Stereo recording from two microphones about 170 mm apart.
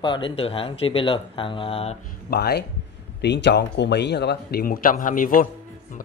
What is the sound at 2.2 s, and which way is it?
Speech, 70° left (ahead or behind).